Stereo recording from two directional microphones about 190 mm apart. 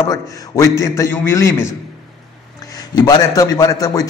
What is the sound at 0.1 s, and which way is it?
A man's voice, 20° left (ahead or behind).